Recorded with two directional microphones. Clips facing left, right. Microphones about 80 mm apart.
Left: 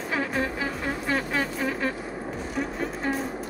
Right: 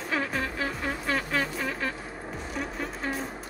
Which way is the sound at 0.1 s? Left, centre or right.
Centre.